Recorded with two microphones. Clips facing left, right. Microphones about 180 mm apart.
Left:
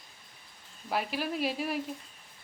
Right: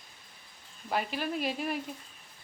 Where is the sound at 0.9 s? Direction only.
5° left (ahead or behind).